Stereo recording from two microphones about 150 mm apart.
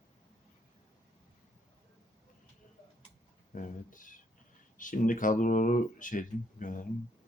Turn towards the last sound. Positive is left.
turn(degrees=60)  # may be behind; listen again after turning